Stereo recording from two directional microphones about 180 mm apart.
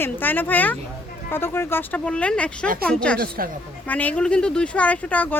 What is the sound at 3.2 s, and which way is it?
Speech, 55° right (ahead or behind).